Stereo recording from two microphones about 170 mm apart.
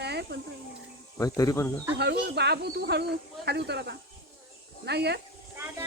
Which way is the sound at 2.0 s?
75° right (ahead or behind).